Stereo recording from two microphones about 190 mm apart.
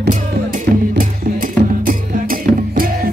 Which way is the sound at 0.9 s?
45° right (ahead or behind).